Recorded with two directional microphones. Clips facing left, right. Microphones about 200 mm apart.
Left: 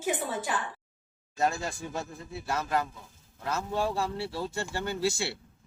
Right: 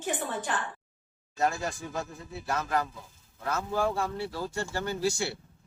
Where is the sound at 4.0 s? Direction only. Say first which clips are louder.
Even; 30° left (ahead or behind).